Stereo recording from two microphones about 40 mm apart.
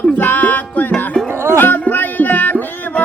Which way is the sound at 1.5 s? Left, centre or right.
Left.